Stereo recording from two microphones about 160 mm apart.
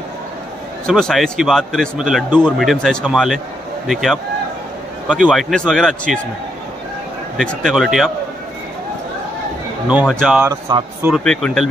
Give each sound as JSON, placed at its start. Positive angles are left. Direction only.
{"t": 0.8, "sound": "a man's voice", "side_deg": 5}
{"t": 7.3, "sound": "a man's voice", "side_deg": 0}
{"t": 9.8, "sound": "speech", "side_deg": -5}
{"t": 10.5, "sound": "speech", "side_deg": -20}
{"t": 11.1, "sound": "a man's voice", "side_deg": 0}